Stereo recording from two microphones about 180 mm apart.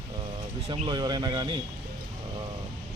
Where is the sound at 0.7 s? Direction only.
25° right (ahead or behind).